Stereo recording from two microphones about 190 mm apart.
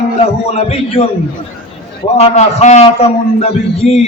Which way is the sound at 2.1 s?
35° left (ahead or behind).